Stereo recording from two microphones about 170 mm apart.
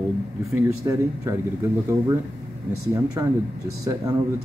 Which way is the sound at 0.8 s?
20° right (ahead or behind).